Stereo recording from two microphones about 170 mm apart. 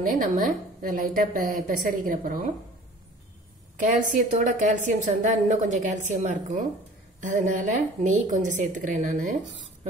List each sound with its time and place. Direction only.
0.0 s a woman's voice: 55° right (ahead or behind)
4.1 s a woman's voice: 50° right (ahead or behind)